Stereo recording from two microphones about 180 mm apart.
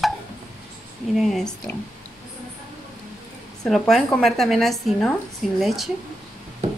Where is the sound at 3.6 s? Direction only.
Centre (ahead or behind).